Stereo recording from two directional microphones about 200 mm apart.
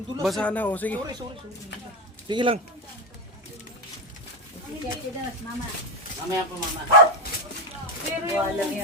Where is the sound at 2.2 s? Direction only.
25° right (ahead or behind).